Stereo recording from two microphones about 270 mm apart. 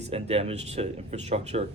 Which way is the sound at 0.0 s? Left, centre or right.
Right.